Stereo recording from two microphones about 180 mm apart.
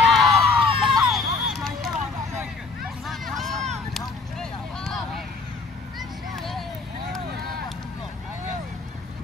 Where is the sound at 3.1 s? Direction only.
Centre (ahead or behind).